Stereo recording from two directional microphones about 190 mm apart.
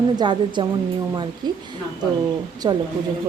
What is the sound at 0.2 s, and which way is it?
A woman's voice, 25° right (ahead or behind).